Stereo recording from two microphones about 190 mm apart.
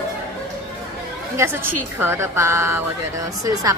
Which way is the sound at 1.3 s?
10° right (ahead or behind).